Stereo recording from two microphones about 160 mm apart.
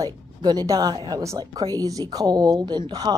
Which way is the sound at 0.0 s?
25° right (ahead or behind).